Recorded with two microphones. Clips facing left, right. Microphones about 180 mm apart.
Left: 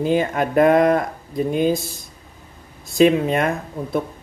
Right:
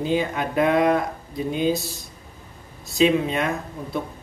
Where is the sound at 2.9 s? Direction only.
50° left (ahead or behind).